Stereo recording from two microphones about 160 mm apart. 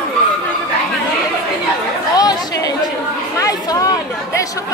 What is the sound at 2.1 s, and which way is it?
Chatter, 25° left (ahead or behind).